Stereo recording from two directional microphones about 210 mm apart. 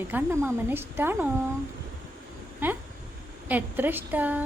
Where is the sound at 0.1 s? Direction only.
10° right (ahead or behind).